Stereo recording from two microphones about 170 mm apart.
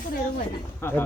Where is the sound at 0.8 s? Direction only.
15° left (ahead or behind).